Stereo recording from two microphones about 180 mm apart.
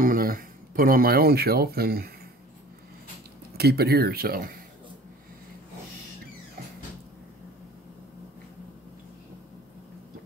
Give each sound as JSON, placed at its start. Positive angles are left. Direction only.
{"t": 0.0, "sound": "speech", "side_deg": -55}
{"t": 3.5, "sound": "speech", "side_deg": -60}